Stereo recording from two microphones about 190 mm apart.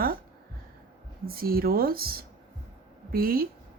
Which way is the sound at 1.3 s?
50° right (ahead or behind).